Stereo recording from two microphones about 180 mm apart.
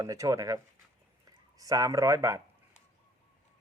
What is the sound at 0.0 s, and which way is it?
A man's voice, 20° right (ahead or behind).